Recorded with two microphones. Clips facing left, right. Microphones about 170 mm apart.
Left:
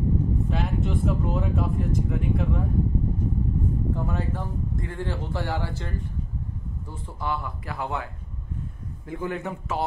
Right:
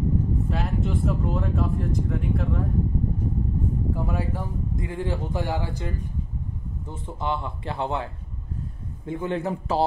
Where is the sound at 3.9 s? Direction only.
10° right (ahead or behind).